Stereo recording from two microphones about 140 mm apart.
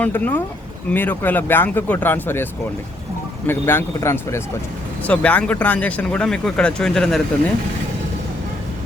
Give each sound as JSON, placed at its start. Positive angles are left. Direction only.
{"t": 0.0, "sound": "speech", "side_deg": 15}